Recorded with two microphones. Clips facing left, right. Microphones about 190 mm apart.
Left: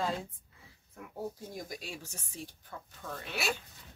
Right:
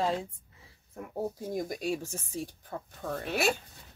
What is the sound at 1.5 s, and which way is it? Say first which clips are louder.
Speech: right 10 dB; 50° right (ahead or behind).